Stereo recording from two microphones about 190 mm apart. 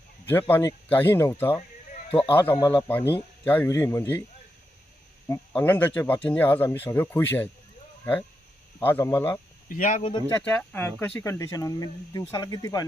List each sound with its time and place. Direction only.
0.5 s speech: 10° left (ahead or behind)
2.0 s speech: 30° left (ahead or behind)
2.3 s speech: 10° left (ahead or behind)
5.3 s speech: 10° left (ahead or behind)
8.8 s speech: 10° left (ahead or behind)
9.6 s speech: 45° left (ahead or behind)
10.0 s speech: 25° left (ahead or behind)